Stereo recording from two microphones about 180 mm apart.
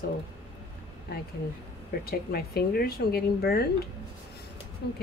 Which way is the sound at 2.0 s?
55° left (ahead or behind).